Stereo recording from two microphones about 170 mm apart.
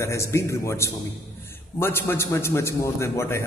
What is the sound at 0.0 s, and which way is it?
A man's voice, 15° left (ahead or behind).